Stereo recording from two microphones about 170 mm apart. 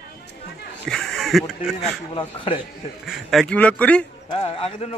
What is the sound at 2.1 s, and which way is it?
Speech, 30° left (ahead or behind).